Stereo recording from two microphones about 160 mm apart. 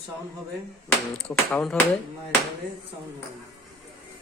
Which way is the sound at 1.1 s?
5° left (ahead or behind).